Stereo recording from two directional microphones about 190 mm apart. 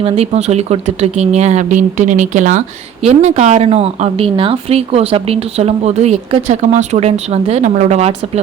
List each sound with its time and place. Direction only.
0.0 s speech: 35° right (ahead or behind)